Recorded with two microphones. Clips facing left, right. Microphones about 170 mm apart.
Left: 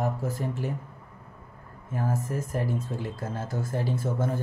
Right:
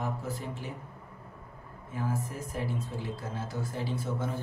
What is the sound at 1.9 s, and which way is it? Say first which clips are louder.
A man's voice: left 5 dB; 45° left (ahead or behind).